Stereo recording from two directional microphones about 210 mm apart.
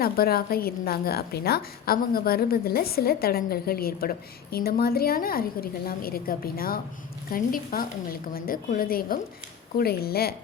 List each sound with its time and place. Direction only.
0.0 s a woman's voice: 45° left (ahead or behind)